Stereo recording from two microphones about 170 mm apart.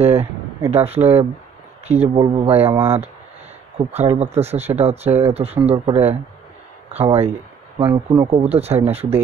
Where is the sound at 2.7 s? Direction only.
15° right (ahead or behind).